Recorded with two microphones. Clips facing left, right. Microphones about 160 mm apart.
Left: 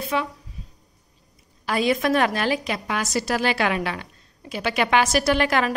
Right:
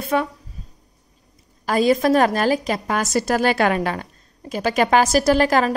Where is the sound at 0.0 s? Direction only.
50° right (ahead or behind).